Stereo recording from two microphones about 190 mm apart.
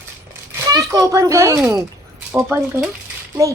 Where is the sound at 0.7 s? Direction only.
20° right (ahead or behind).